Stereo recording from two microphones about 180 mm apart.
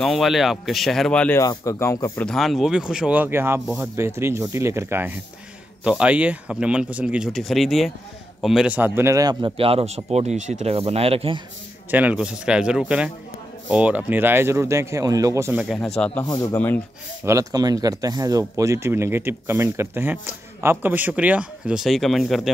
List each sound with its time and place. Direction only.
0.0 s speech: centre (ahead or behind)
1.4 s speech: 20° left (ahead or behind)
2.2 s speech: centre (ahead or behind); by 11.4 s 30° right (ahead or behind)
11.9 s speech: 10° right (ahead or behind)
16.3 s speech: 15° left (ahead or behind)
17.2 s speech: 15° right (ahead or behind); by 22.5 s centre (ahead or behind)